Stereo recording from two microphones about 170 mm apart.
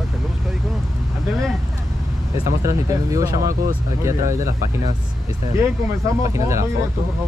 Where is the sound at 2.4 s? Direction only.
20° right (ahead or behind).